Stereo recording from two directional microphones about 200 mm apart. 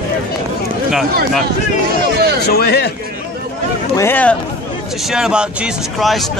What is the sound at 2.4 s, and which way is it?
Speech, 50° left (ahead or behind).